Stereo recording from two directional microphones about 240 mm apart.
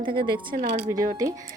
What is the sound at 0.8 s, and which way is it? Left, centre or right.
Speech, centre.